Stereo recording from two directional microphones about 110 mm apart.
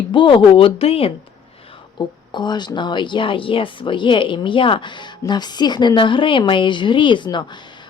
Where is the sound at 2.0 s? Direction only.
45° left (ahead or behind).